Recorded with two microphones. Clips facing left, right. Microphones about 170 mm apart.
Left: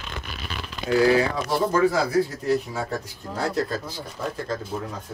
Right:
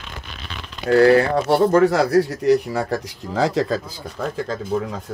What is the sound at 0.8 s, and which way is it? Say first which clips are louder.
Speech: right 6 dB; 65° right (ahead or behind).